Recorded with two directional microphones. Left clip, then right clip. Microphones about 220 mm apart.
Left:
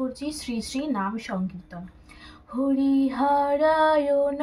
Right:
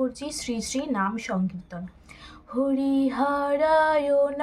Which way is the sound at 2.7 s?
55° right (ahead or behind).